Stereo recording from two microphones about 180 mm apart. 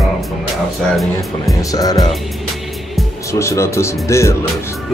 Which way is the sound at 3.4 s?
15° left (ahead or behind).